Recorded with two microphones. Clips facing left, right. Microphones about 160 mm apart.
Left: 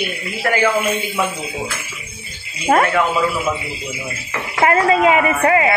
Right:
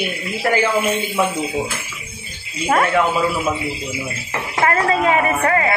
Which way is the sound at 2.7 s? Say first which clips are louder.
Left 3 dB; 30° left (ahead or behind).